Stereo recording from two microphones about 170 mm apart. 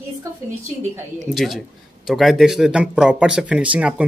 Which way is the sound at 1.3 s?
Centre (ahead or behind).